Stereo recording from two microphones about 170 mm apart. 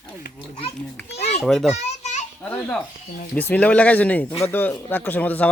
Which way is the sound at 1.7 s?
45° left (ahead or behind).